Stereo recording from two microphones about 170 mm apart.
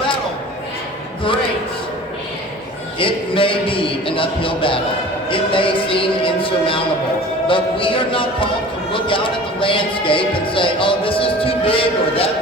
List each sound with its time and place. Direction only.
3.0 s speech: 30° left (ahead or behind)